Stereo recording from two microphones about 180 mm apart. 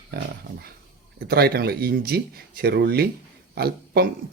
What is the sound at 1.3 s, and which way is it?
Speech, 60° right (ahead or behind).